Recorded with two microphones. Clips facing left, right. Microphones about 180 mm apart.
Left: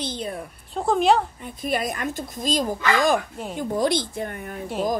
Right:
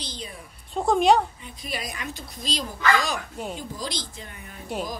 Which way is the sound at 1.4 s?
50° left (ahead or behind).